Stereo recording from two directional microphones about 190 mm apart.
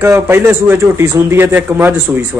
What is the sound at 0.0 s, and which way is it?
A man's voice, 10° right (ahead or behind).